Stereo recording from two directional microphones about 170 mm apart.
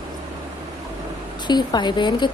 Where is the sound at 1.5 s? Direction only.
25° left (ahead or behind).